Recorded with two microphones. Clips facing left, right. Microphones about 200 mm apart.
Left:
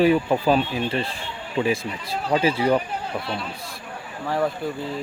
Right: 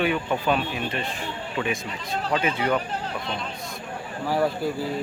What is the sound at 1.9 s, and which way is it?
Speech, 10° left (ahead or behind).